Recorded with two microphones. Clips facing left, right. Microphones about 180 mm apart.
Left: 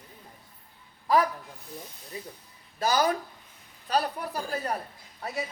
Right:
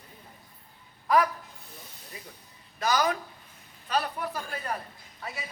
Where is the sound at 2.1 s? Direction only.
35° left (ahead or behind).